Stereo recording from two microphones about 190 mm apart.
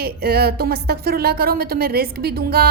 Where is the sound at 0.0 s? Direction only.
55° right (ahead or behind).